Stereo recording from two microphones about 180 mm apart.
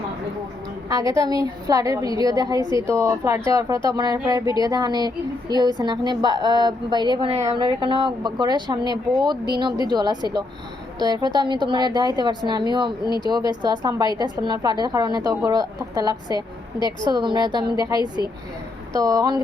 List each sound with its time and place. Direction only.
0.9 s a woman's voice: 20° right (ahead or behind)
13.1 s speech: 25° left (ahead or behind)
13.5 s a woman's voice: 25° right (ahead or behind)